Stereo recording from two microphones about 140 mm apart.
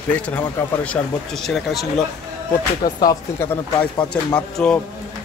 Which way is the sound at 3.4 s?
15° left (ahead or behind).